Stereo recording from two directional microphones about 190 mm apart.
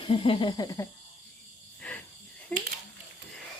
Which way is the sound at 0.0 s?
30° left (ahead or behind).